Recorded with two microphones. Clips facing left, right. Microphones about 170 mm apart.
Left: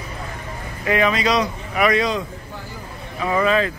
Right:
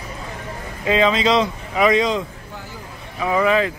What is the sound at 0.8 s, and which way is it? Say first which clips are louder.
Speech: right 2 dB; 20° right (ahead or behind).